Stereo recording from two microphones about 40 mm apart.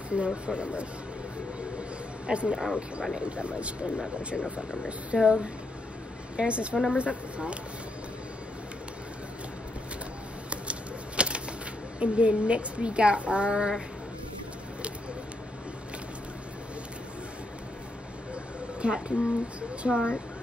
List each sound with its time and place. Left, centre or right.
0.1 s a woman's voice: right
2.2 s a woman's voice: right
2.6 s speech: centre
3.2 s a woman's voice: right
10.5 s typewriter: right
12.0 s a woman's voice: right
18.8 s speech: right
19.8 s speech: centre